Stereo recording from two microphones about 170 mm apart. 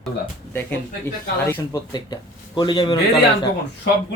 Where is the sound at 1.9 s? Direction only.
25° left (ahead or behind).